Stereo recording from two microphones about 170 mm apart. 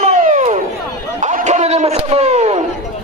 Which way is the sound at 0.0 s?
45° right (ahead or behind).